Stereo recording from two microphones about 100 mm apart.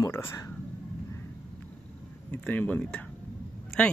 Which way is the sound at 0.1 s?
25° left (ahead or behind).